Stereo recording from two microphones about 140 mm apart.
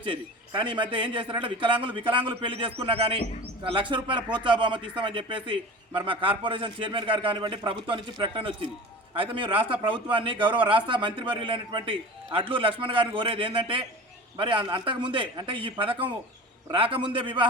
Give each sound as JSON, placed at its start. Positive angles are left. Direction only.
{"t": 0.0, "sound": "a man's voice", "side_deg": -35}